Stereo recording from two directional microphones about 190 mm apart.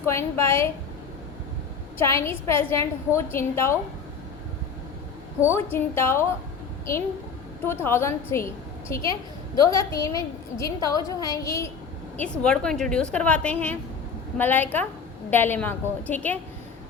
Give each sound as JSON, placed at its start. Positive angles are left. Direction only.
{"t": 0.0, "sound": "a woman's voice", "side_deg": 15}
{"t": 2.0, "sound": "a woman's voice", "side_deg": 15}
{"t": 5.4, "sound": "a woman's voice", "side_deg": 15}
{"t": 7.6, "sound": "a woman's voice", "side_deg": 10}
{"t": 9.6, "sound": "a woman's voice", "side_deg": 20}